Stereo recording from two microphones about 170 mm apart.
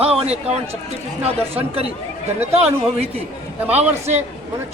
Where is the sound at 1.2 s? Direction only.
35° right (ahead or behind).